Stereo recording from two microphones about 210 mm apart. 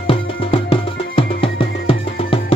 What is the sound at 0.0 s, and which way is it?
Music, 25° left (ahead or behind).